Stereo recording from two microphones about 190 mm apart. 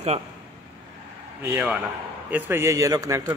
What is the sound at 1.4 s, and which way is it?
A man's voice, 10° right (ahead or behind).